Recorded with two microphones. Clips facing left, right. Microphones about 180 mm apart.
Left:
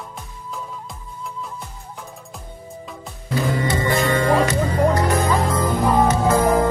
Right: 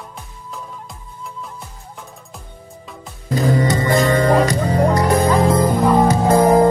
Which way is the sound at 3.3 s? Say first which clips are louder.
Right 4 dB; 40° right (ahead or behind).